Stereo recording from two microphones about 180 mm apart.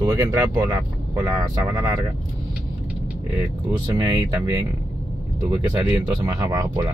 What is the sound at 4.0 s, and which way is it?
Speech, 25° right (ahead or behind).